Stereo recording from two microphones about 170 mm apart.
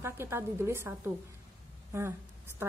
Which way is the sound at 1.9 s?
15° right (ahead or behind).